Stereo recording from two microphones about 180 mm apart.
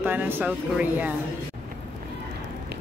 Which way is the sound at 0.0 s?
10° right (ahead or behind).